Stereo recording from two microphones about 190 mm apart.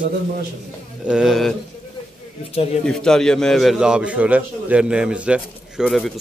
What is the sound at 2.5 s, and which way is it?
Speech, 30° left (ahead or behind).